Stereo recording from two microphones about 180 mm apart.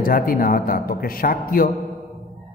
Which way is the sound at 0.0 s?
55° left (ahead or behind).